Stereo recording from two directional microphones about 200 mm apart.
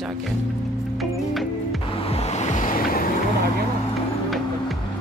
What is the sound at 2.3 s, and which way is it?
Waves, 35° left (ahead or behind).